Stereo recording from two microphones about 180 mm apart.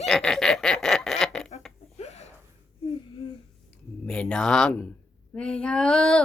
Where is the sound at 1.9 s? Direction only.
35° left (ahead or behind).